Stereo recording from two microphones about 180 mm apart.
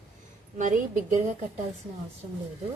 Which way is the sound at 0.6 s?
45° right (ahead or behind).